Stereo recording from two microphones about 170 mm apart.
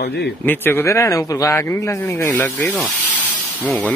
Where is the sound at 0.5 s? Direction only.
10° left (ahead or behind).